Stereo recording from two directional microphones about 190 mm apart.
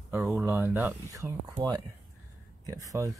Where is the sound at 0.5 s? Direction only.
10° right (ahead or behind).